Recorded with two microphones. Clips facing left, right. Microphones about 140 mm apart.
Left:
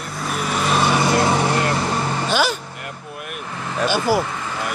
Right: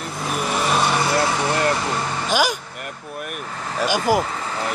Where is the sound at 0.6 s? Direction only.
Centre (ahead or behind).